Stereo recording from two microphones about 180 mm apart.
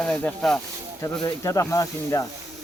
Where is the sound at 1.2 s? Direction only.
15° left (ahead or behind).